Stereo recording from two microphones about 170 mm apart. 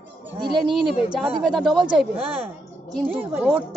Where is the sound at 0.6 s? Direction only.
Centre (ahead or behind).